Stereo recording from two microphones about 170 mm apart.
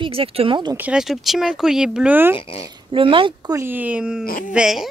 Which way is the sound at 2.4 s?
35° left (ahead or behind).